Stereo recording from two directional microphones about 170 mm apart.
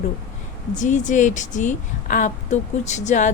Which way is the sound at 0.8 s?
45° left (ahead or behind).